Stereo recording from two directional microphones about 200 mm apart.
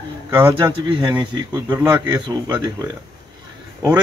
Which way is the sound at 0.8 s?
25° right (ahead or behind).